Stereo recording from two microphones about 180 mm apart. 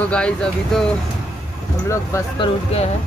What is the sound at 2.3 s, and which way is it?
Speech, 30° left (ahead or behind).